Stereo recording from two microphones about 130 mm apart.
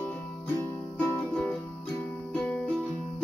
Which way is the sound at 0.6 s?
15° left (ahead or behind).